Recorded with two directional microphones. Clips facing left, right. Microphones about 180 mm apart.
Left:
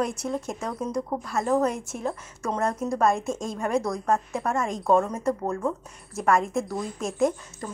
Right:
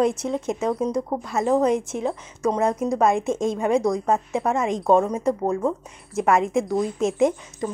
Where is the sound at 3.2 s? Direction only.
Centre (ahead or behind).